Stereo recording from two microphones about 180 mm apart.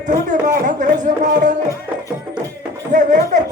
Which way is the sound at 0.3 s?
45° right (ahead or behind).